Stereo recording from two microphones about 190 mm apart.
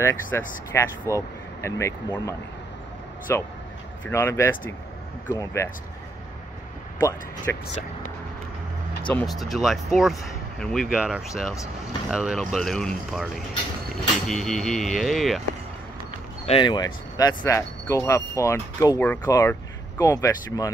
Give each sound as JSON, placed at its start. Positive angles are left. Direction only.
{"t": 0.0, "sound": "speech", "side_deg": 15}
{"t": 7.0, "sound": "speech", "side_deg": 20}
{"t": 9.1, "sound": "speech", "side_deg": 0}
{"t": 16.4, "sound": "speech", "side_deg": 25}